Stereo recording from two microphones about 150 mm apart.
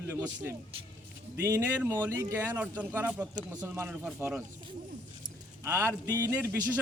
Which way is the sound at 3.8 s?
10° right (ahead or behind).